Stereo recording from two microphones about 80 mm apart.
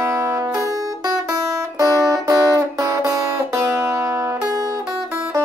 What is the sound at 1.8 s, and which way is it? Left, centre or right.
Music, right.